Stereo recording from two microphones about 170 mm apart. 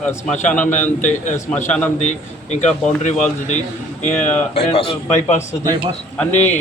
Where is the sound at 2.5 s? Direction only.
45° left (ahead or behind).